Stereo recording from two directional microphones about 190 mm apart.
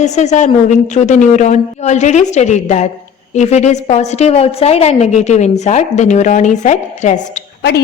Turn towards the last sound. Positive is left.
turn(degrees=60)  # may be behind; listen again after turning